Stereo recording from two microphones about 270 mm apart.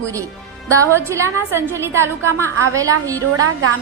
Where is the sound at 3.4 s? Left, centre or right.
Right.